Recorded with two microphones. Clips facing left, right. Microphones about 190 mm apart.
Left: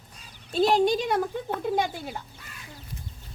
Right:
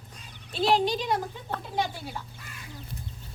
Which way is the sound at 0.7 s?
50° left (ahead or behind).